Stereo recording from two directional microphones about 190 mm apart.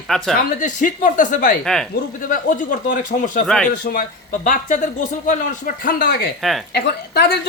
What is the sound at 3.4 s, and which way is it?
Speech, 5° left (ahead or behind).